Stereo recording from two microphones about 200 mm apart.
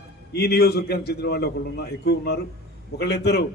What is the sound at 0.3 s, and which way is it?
A man's voice, 55° left (ahead or behind).